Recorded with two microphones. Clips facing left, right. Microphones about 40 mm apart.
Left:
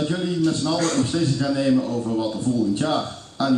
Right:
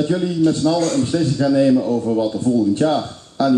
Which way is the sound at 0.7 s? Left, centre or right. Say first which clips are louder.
Right 4 dB; left.